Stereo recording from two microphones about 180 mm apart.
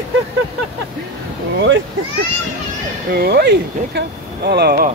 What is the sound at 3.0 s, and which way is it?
Speech, 60° right (ahead or behind).